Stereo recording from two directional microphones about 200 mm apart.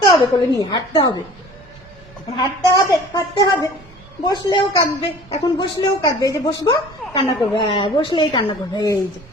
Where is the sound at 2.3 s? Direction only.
15° left (ahead or behind).